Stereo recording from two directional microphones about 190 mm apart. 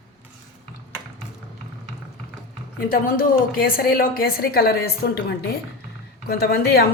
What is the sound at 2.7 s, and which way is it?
A woman's voice, 50° left (ahead or behind).